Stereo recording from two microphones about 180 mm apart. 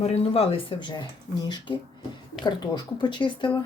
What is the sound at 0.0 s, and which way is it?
Speech, 35° left (ahead or behind).